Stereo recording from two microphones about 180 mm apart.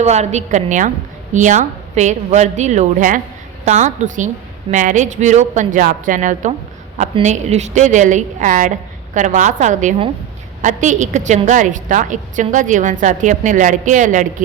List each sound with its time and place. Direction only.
0.0 s a woman's voice: 40° right (ahead or behind)